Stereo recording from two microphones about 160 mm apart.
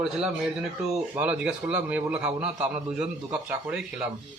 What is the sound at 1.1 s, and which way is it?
A man's voice, 10° right (ahead or behind).